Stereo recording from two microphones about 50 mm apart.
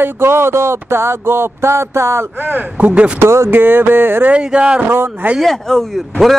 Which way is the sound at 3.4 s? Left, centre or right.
Right.